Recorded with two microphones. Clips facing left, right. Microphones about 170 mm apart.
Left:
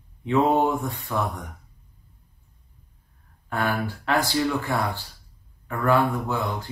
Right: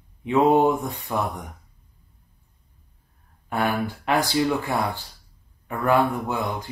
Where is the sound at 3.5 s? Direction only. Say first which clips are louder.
Right 2 dB; 15° right (ahead or behind).